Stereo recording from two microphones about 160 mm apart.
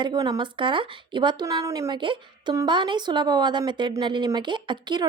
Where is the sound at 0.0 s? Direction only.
25° right (ahead or behind).